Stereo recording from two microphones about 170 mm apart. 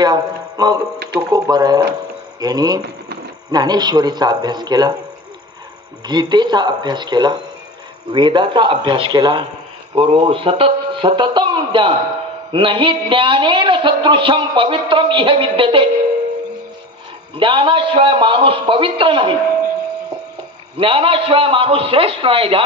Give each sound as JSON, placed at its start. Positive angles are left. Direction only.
{"t": 0.0, "sound": "a sound", "side_deg": -25}
{"t": 1.3, "sound": "speech", "side_deg": -25}
{"t": 6.0, "sound": "a man's voice", "side_deg": -25}
{"t": 17.4, "sound": "a man's voice", "side_deg": -30}
{"t": 20.8, "sound": "a man's voice", "side_deg": -30}